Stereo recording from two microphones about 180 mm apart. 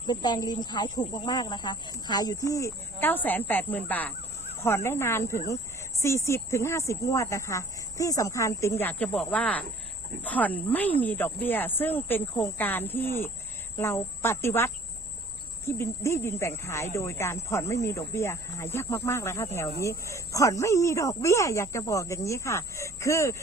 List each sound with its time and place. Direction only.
0.1 s speech: 25° left (ahead or behind)